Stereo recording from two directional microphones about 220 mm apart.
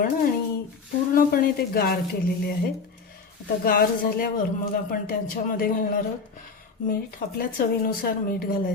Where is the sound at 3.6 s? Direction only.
45° left (ahead or behind).